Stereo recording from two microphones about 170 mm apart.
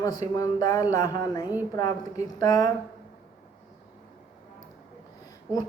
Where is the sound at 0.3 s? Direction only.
20° left (ahead or behind).